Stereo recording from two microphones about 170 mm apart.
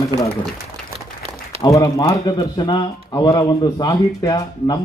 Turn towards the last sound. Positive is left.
turn(degrees=20)  # may be behind; listen again after turning